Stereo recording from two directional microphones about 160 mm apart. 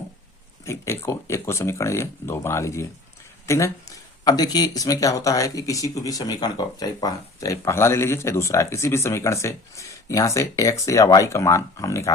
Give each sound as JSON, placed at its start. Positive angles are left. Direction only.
{"t": 0.6, "sound": "speech", "side_deg": 15}